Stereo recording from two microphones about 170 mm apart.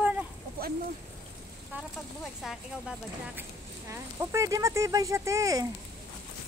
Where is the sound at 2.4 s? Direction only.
5° right (ahead or behind).